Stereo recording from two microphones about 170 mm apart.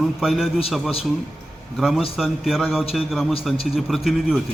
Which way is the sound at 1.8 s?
Centre (ahead or behind).